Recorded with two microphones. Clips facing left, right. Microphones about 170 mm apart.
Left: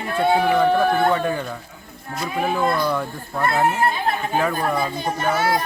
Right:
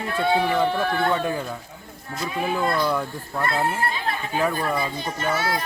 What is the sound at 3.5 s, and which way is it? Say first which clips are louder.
Speech: left 5 dB; 45° left (ahead or behind).